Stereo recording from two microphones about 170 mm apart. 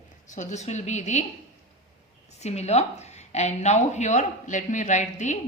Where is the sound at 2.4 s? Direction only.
40° left (ahead or behind).